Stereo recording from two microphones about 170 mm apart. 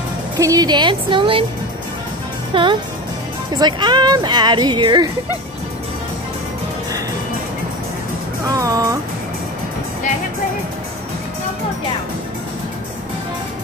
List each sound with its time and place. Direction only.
0.4 s speech: 20° right (ahead or behind)
2.5 s speech: 30° right (ahead or behind)
8.5 s speech: 20° right (ahead or behind)